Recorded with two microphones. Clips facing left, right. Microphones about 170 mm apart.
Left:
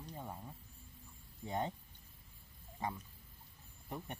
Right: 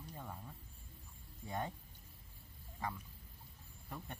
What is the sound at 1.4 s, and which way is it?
Speech, 20° left (ahead or behind).